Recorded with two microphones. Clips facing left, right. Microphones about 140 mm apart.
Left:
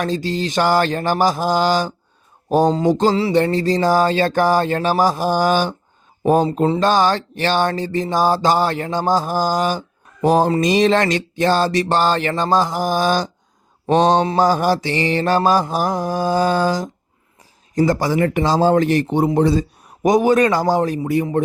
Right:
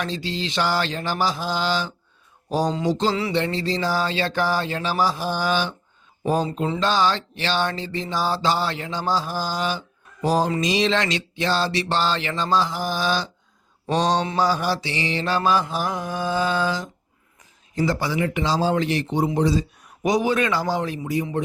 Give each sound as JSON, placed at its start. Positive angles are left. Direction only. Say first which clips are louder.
{"t": 0.0, "sound": "speech", "louder": "left 7 dB", "side_deg": 45}
{"t": 14.3, "sound": "mantra", "louder": "left 6 dB", "side_deg": 45}
{"t": 17.7, "sound": "speech", "louder": "left 6 dB", "side_deg": 45}